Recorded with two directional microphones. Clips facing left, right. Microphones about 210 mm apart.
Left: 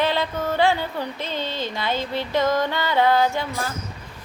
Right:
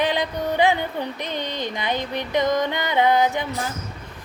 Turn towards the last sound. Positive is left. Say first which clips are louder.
# even
turn(degrees=-20)  # may be behind; listen again after turning